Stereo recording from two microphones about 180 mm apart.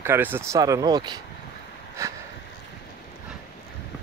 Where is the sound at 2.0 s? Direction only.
15° right (ahead or behind).